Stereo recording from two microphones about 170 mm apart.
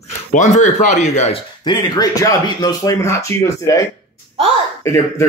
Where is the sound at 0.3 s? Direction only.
45° left (ahead or behind).